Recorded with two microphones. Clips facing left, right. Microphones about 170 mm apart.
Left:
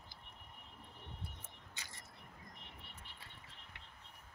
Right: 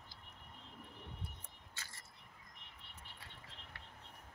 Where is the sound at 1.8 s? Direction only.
15° left (ahead or behind).